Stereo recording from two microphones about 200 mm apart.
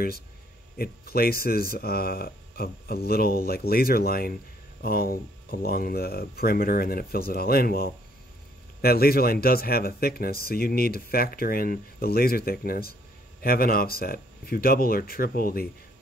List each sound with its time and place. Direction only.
0.7 s speech: 50° left (ahead or behind)